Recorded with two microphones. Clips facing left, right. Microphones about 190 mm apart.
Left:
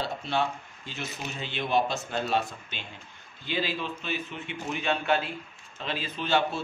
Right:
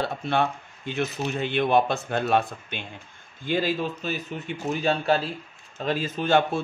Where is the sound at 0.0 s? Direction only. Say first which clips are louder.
Right 4 dB; 55° right (ahead or behind).